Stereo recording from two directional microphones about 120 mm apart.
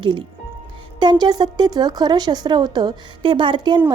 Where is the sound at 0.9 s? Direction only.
40° right (ahead or behind).